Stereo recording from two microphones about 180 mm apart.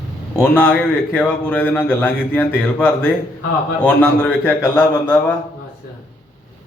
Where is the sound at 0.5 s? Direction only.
10° left (ahead or behind).